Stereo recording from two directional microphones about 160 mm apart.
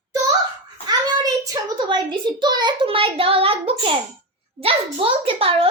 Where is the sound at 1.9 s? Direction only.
30° right (ahead or behind).